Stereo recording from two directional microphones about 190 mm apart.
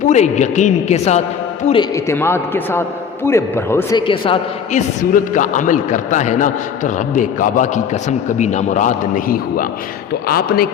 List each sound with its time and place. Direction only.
0.0 s a man's voice: 40° left (ahead or behind)
2.0 s a man's voice: 15° left (ahead or behind)
4.0 s a man's voice: 25° left (ahead or behind)
4.7 s a man's voice: 40° left (ahead or behind)